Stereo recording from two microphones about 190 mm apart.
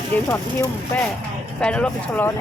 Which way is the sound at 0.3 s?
10° left (ahead or behind).